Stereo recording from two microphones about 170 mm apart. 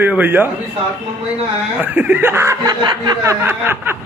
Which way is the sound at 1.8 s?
10° right (ahead or behind).